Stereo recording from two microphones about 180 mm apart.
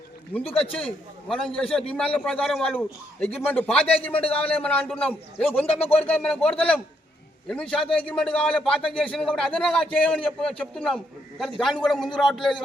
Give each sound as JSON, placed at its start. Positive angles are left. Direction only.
{"t": 0.4, "sound": "speech", "side_deg": 30}
{"t": 1.3, "sound": "a man's voice", "side_deg": 5}